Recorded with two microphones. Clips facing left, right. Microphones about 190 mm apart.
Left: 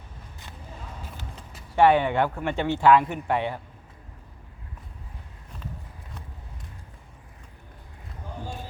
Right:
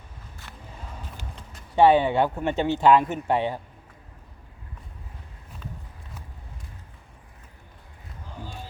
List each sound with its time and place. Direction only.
1.7 s speech: 15° right (ahead or behind)